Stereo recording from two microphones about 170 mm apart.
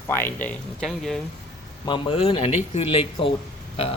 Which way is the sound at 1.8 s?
30° left (ahead or behind).